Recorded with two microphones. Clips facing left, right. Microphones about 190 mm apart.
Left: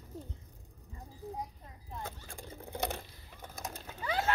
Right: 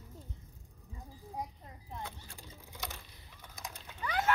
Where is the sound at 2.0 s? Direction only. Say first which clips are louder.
Left 2 dB; 50° left (ahead or behind).